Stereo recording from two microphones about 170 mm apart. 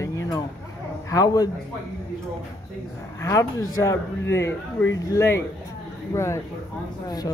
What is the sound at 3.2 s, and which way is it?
Speech, 20° left (ahead or behind).